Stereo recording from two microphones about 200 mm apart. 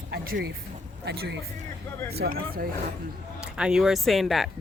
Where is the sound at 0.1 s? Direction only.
55° right (ahead or behind).